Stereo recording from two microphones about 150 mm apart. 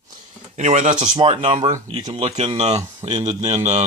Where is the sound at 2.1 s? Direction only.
45° right (ahead or behind).